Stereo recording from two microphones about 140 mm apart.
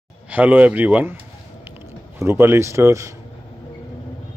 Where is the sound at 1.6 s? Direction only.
15° right (ahead or behind).